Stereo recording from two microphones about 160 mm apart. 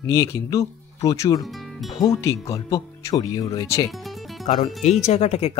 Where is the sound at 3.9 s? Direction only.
Centre (ahead or behind).